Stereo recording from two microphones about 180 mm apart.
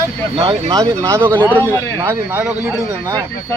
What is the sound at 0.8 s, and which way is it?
Speech, 15° right (ahead or behind).